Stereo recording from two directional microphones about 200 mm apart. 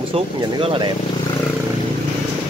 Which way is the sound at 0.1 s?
25° right (ahead or behind).